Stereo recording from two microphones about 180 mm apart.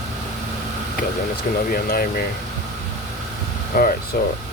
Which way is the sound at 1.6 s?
55° left (ahead or behind).